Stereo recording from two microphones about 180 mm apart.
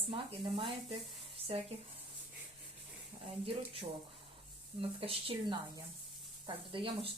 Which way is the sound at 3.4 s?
30° right (ahead or behind).